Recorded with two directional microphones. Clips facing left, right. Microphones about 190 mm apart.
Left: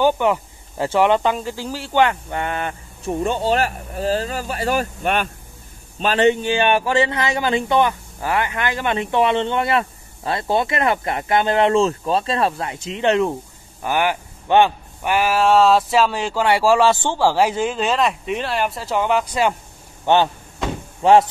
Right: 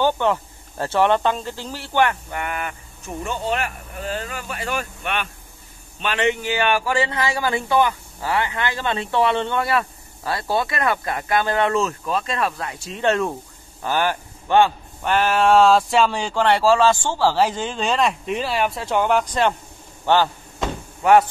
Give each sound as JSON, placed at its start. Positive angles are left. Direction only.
{"t": 0.0, "sound": "speech", "side_deg": 15}
{"t": 2.4, "sound": "a man's voice", "side_deg": 30}
{"t": 20.1, "sound": "speech", "side_deg": 15}